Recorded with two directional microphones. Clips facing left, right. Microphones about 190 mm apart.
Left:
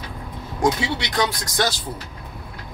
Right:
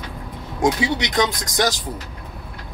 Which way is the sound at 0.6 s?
15° right (ahead or behind).